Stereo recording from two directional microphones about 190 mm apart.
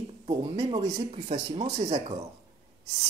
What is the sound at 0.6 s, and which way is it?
Speech, 30° right (ahead or behind).